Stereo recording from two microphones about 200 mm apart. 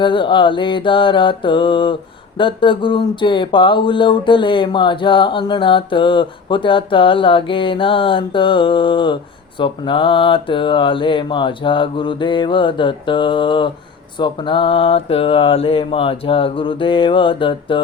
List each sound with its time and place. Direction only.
0.0 s speech: 25° left (ahead or behind)